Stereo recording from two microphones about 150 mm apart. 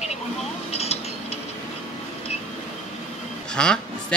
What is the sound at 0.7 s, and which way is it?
Speech, 45° left (ahead or behind).